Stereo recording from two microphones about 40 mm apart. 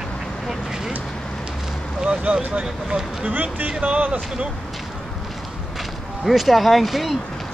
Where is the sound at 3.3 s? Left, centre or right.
Right.